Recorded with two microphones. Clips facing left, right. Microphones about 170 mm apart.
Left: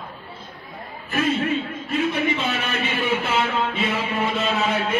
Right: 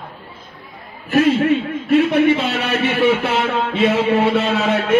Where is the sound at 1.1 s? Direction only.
70° right (ahead or behind).